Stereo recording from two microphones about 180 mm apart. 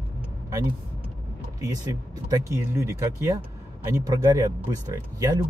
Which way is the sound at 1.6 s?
20° right (ahead or behind).